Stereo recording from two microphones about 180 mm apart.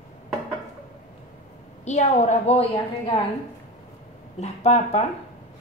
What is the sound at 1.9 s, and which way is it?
Speech, 40° left (ahead or behind).